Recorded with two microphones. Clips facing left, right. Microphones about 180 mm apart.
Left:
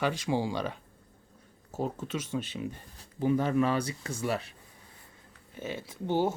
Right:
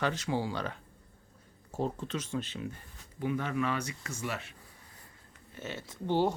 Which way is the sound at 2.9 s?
35° left (ahead or behind).